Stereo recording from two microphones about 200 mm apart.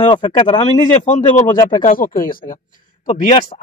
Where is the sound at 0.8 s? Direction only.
40° left (ahead or behind).